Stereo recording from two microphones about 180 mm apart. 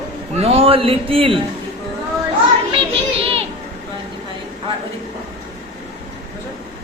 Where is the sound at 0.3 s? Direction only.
35° right (ahead or behind).